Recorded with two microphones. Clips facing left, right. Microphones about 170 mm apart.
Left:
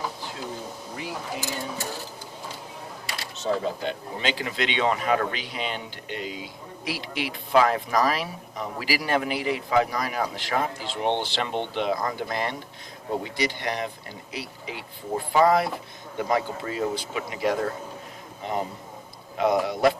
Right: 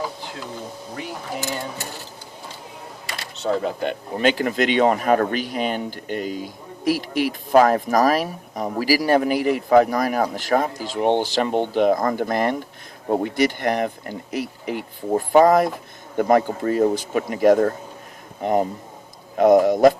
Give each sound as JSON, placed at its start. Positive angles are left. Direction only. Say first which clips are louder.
{"t": 3.1, "sound": "speech", "louder": "right 4 dB", "side_deg": -60}
{"t": 19.4, "sound": "speech", "louder": "right 8 dB", "side_deg": -45}